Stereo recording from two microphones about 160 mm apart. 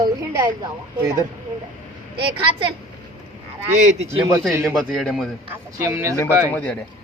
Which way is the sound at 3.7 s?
45° right (ahead or behind).